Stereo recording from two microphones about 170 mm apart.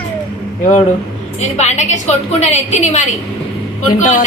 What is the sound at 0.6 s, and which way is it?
A woman's voice, 45° left (ahead or behind).